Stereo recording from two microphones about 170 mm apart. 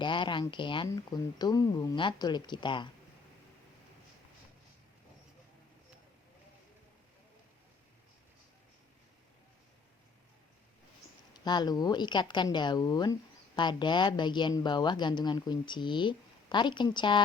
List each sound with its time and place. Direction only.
0.0 s a woman's voice: 30° left (ahead or behind)
11.4 s a woman's voice: 25° left (ahead or behind)